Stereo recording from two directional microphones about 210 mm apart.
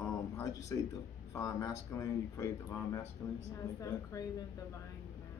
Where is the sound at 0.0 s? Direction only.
15° left (ahead or behind).